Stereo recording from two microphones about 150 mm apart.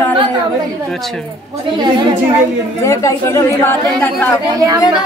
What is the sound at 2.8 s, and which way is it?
Speech, 20° left (ahead or behind).